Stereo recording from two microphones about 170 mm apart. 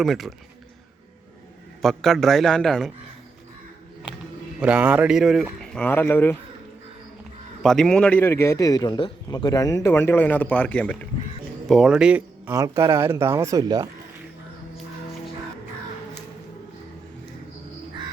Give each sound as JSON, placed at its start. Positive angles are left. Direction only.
{"t": 0.0, "sound": "a man's voice", "side_deg": 0}
{"t": 1.8, "sound": "a man's voice", "side_deg": 0}
{"t": 4.6, "sound": "a man's voice", "side_deg": -10}
{"t": 7.6, "sound": "a man's voice", "side_deg": 0}
{"t": 11.7, "sound": "a man's voice", "side_deg": -5}
{"t": 12.5, "sound": "speech", "side_deg": -20}